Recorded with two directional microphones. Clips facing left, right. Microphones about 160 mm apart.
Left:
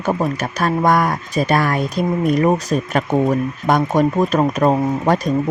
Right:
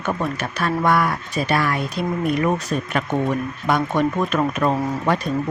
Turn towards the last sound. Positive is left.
turn(degrees=40)  # may be behind; listen again after turning